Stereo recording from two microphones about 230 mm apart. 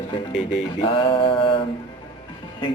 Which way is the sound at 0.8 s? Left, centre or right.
Left.